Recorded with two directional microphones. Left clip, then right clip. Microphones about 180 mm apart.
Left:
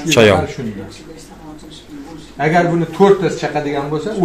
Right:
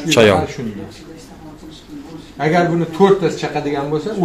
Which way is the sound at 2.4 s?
10° left (ahead or behind).